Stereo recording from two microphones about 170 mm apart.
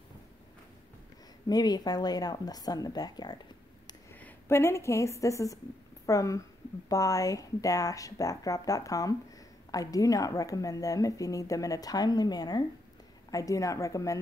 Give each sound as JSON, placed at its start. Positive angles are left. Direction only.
{"t": 1.5, "sound": "speech", "side_deg": 25}
{"t": 4.1, "sound": "a woman's voice", "side_deg": 15}